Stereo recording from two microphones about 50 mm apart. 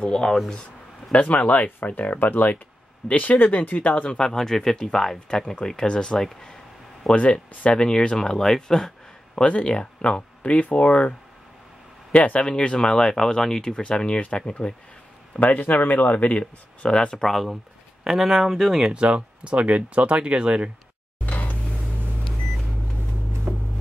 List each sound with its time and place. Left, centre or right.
0.0 s speech: centre
1.1 s speech: left
4.3 s speech: centre
6.2 s a sound: centre
7.7 s speech: centre
9.3 s speech: left
12.4 s speech: centre
15.3 s speech: left
17.2 s speech: centre
18.0 s speech: centre
18.9 s speech: right
21.3 s music: left
23.5 s a sound: right